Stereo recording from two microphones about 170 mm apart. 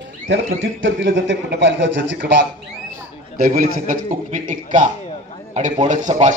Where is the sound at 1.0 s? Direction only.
90° right.